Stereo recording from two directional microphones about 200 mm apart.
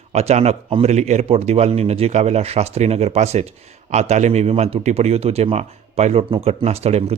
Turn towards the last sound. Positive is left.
turn(degrees=-30)  # may be behind; listen again after turning